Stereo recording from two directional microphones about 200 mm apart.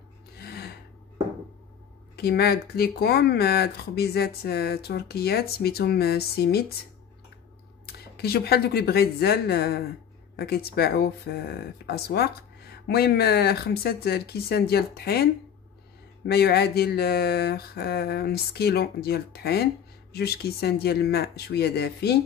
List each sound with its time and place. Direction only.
0.4 s gasp: 50° left (ahead or behind)
2.1 s speech: 50° left (ahead or behind)
7.8 s speech: 50° left (ahead or behind)
16.3 s speech: 55° left (ahead or behind)